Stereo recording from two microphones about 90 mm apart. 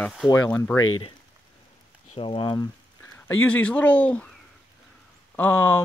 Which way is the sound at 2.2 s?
65° left (ahead or behind).